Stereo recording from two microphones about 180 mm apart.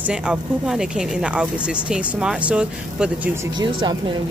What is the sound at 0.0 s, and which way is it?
Speech, 5° right (ahead or behind).